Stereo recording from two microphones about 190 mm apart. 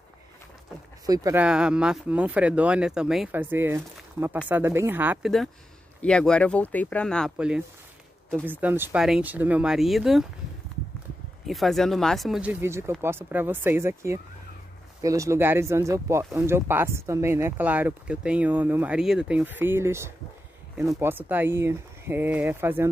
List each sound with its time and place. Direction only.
1.0 s speech: 20° right (ahead or behind)
1.4 s speech: 5° right (ahead or behind)
6.0 s speech: 5° left (ahead or behind)
11.4 s speech: centre (ahead or behind)